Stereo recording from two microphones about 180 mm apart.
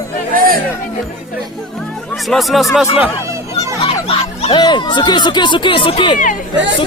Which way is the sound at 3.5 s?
30° left (ahead or behind).